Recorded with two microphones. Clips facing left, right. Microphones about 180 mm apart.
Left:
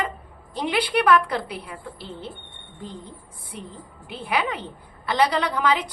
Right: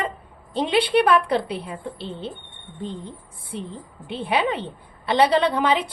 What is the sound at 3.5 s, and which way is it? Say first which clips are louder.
A woman's voice: right 6 dB; 30° right (ahead or behind).